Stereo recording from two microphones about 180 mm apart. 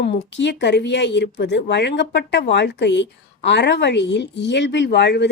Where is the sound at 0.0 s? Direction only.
75° left (ahead or behind).